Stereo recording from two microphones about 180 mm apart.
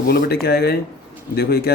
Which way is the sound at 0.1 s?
60° left (ahead or behind).